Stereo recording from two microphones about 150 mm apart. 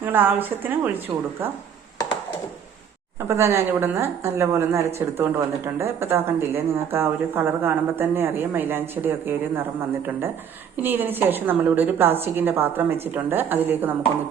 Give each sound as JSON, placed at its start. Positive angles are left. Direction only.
{"t": 0.0, "sound": "speech", "side_deg": -15}
{"t": 3.2, "sound": "speech", "side_deg": -20}